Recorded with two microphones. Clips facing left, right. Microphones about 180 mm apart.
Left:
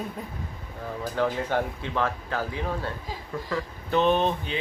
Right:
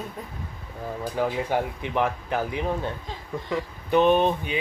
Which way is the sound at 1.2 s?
10° right (ahead or behind).